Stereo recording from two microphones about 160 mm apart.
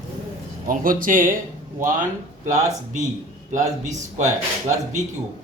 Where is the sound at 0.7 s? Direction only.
60° right (ahead or behind).